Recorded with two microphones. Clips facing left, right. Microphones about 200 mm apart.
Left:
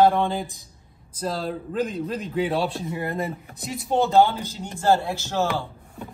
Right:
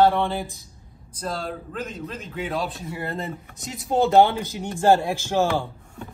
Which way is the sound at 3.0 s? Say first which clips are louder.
Left 2 dB; 15° left (ahead or behind).